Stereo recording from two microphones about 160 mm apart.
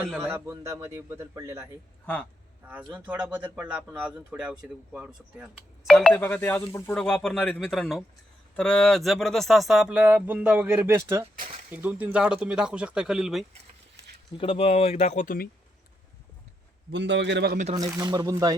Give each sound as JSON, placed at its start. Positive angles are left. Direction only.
{"t": 0.2, "sound": "a man's voice", "side_deg": -15}
{"t": 14.3, "sound": "speech", "side_deg": 35}
{"t": 16.9, "sound": "a man's voice", "side_deg": -90}
{"t": 17.7, "sound": "speech", "side_deg": -25}